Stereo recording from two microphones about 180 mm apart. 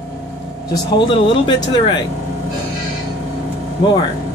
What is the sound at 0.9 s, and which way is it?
Speech, 30° left (ahead or behind).